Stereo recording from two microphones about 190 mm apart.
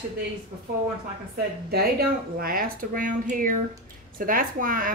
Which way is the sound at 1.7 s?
55° right (ahead or behind).